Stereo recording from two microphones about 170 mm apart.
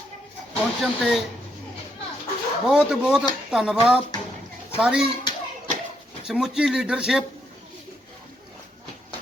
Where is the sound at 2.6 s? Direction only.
5° right (ahead or behind).